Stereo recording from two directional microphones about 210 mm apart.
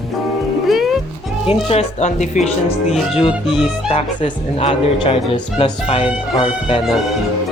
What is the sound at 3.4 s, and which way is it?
Speech, centre (ahead or behind).